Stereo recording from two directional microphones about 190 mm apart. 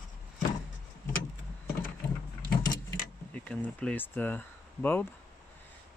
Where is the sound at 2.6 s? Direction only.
20° left (ahead or behind).